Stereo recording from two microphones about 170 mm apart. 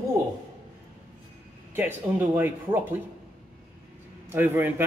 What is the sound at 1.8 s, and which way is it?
Speech, 10° right (ahead or behind).